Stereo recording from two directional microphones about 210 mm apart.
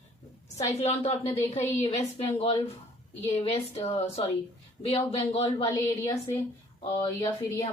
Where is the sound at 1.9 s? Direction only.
30° left (ahead or behind).